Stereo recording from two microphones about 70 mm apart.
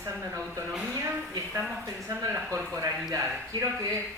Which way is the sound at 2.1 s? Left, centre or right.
Right.